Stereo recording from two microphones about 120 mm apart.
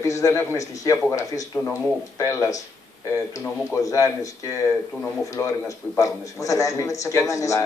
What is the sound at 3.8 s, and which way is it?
A man's voice, 30° left (ahead or behind).